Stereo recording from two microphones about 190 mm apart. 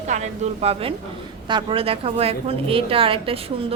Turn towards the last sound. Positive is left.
turn(degrees=-30)  # may be behind; listen again after turning